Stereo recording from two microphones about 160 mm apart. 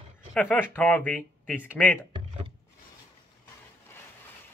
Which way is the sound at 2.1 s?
35° right (ahead or behind).